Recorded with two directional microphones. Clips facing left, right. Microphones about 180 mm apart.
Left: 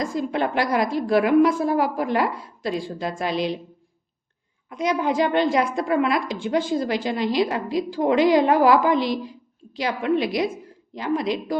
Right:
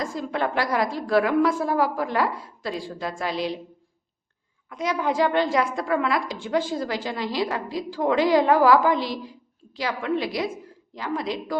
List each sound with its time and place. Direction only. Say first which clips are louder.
0.0 s a woman's voice: left 3 dB; 15° left (ahead or behind)
4.7 s a woman's voice: left 3 dB; 20° left (ahead or behind)